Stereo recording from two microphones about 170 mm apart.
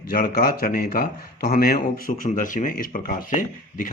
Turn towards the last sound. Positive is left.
turn(degrees=50)  # may be behind; listen again after turning